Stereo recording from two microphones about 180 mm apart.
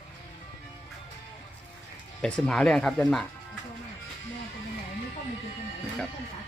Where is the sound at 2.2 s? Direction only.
5° left (ahead or behind).